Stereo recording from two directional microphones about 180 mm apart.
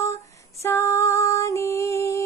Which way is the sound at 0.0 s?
15° left (ahead or behind).